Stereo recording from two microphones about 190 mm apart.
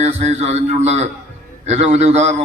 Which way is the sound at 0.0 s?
35° right (ahead or behind).